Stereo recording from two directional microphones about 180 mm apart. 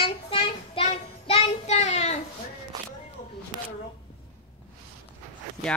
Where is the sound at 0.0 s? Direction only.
30° left (ahead or behind).